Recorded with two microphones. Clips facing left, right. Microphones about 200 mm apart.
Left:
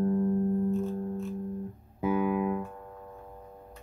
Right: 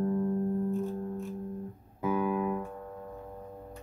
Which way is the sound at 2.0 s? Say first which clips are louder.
Left 2 dB; 10° left (ahead or behind).